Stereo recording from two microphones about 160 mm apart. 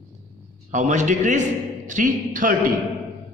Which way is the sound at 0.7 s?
50° right (ahead or behind).